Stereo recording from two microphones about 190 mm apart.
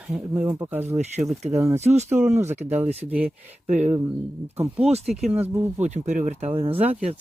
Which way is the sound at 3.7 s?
40° right (ahead or behind).